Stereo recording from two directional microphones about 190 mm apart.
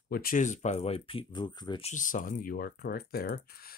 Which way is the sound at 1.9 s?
40° left (ahead or behind).